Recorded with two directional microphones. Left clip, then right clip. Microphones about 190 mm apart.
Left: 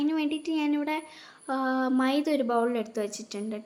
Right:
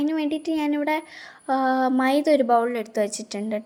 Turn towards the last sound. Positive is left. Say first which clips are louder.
# right 7 dB
turn(degrees=-30)  # may be behind; listen again after turning